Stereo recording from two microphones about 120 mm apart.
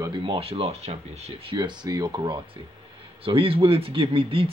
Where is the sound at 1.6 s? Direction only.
40° right (ahead or behind).